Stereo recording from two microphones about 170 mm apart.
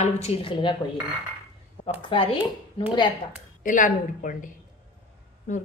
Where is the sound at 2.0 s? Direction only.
30° left (ahead or behind).